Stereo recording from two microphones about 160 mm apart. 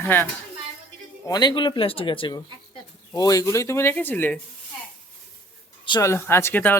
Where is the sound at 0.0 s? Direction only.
10° left (ahead or behind).